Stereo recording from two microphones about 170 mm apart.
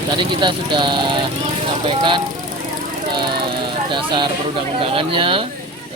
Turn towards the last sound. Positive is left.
turn(degrees=-30)  # may be behind; listen again after turning